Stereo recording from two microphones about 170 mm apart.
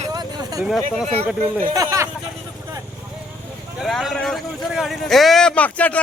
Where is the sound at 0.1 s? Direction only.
20° right (ahead or behind).